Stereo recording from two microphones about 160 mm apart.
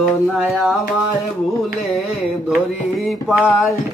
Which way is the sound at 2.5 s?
Centre (ahead or behind).